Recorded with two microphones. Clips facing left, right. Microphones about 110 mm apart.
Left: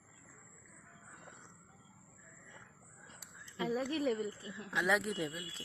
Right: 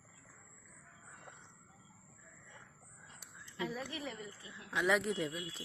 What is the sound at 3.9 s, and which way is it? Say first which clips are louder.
Speech: left 10 dB; 50° left (ahead or behind).